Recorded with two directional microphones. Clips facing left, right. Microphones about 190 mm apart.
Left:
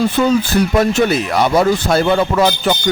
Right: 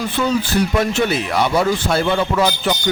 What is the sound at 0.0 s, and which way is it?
Speech, 45° left (ahead or behind).